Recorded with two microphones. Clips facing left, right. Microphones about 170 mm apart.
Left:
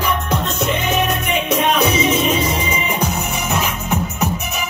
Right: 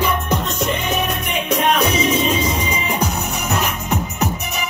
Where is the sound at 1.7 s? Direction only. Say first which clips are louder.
Left 1 dB; 5° left (ahead or behind).